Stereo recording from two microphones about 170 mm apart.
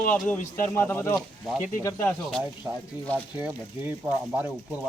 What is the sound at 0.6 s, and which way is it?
Speech, 10° left (ahead or behind).